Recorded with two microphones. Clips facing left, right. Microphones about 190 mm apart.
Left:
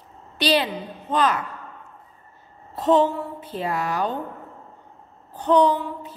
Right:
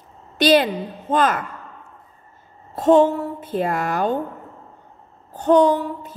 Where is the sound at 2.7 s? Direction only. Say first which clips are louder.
Right 4 dB; 50° right (ahead or behind).